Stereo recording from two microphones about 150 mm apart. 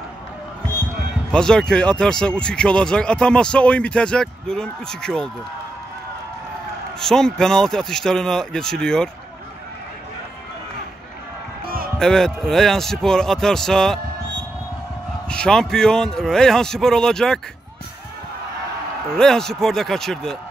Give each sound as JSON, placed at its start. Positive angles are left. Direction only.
{"t": 1.3, "sound": "speech", "side_deg": 5}
{"t": 7.0, "sound": "speech", "side_deg": 5}
{"t": 11.6, "sound": "music", "side_deg": -75}
{"t": 12.0, "sound": "speech", "side_deg": 5}
{"t": 15.2, "sound": "speech", "side_deg": 5}
{"t": 19.1, "sound": "speech", "side_deg": 5}